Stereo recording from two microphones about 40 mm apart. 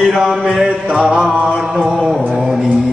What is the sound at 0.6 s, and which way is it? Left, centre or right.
Music, centre.